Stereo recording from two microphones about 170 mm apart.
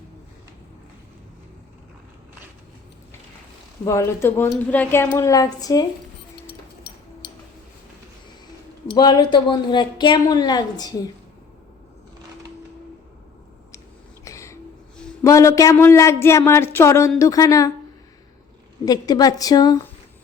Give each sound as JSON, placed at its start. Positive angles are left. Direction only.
{"t": 3.8, "sound": "speech", "side_deg": 15}
{"t": 8.9, "sound": "a woman's voice", "side_deg": 25}
{"t": 14.3, "sound": "a sound", "side_deg": 15}
{"t": 15.2, "sound": "a woman's voice", "side_deg": 20}
{"t": 18.9, "sound": "a woman's voice", "side_deg": 20}